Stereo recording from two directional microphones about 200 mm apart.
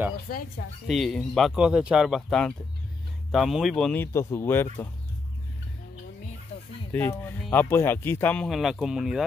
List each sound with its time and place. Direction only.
0.3 s speech: 50° left (ahead or behind)
0.8 s speech: centre (ahead or behind)
6.5 s a sound: 30° left (ahead or behind)
6.9 s speech: 10° left (ahead or behind)